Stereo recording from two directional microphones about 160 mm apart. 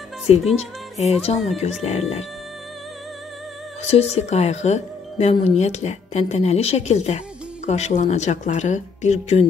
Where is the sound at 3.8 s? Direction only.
40° left (ahead or behind).